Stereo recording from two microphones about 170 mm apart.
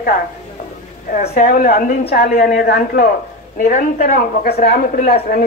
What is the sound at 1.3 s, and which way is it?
A woman's voice, 60° left (ahead or behind).